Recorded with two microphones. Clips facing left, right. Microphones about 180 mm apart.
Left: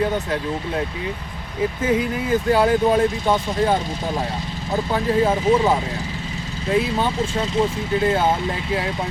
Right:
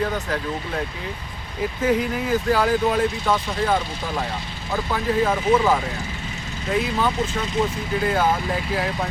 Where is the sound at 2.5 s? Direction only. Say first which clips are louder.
Left 4 dB; 25° left (ahead or behind).